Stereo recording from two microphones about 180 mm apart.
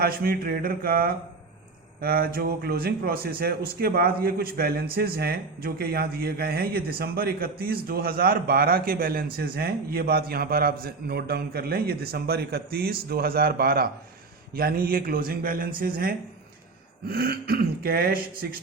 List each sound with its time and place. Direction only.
0.0 s a man's voice: 55° right (ahead or behind)